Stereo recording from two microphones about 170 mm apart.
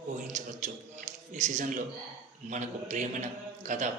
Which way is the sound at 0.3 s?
45° right (ahead or behind).